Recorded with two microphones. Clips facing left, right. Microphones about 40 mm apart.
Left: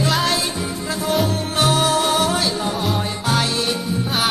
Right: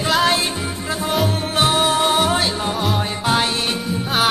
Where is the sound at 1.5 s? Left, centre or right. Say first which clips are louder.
Even; right.